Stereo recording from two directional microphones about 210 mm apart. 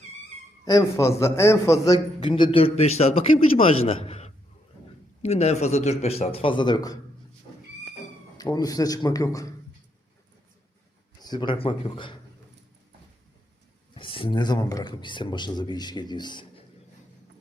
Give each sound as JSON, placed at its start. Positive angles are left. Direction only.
{"t": 0.6, "sound": "a man's voice", "side_deg": 15}
{"t": 8.4, "sound": "a man's voice", "side_deg": 20}
{"t": 11.2, "sound": "a man's voice", "side_deg": 20}
{"t": 13.9, "sound": "a man's voice", "side_deg": 25}